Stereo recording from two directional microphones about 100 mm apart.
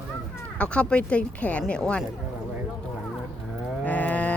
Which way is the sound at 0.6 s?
10° left (ahead or behind).